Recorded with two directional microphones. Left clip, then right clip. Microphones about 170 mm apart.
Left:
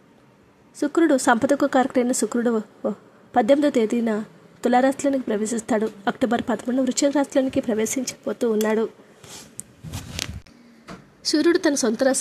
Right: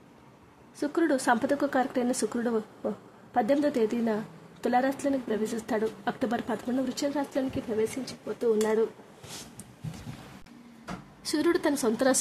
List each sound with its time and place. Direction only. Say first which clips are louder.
0.7 s a woman's voice: left 8 dB; 30° left (ahead or behind); by 8.5 s 45° left (ahead or behind)
11.2 s speech: left 7 dB; 25° left (ahead or behind)